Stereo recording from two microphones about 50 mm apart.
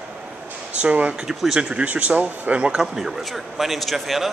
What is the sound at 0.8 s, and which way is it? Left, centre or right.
Speech, right.